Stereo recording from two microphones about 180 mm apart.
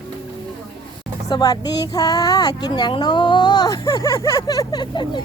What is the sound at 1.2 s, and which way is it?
Speech, 20° left (ahead or behind).